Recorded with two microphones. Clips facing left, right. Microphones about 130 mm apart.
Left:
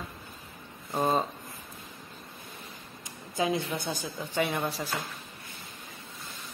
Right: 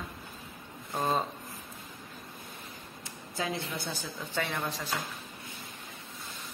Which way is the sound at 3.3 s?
15° left (ahead or behind).